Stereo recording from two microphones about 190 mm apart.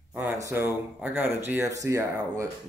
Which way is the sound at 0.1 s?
10° right (ahead or behind).